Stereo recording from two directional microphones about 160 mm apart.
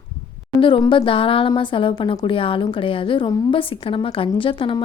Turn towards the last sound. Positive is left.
turn(degrees=30)  # may be behind; listen again after turning